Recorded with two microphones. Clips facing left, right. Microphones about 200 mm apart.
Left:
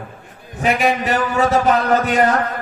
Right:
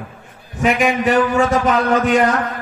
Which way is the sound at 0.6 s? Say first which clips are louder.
Right 2 dB; 35° left (ahead or behind).